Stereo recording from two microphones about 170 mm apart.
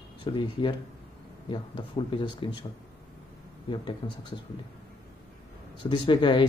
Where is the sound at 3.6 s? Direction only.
30° left (ahead or behind).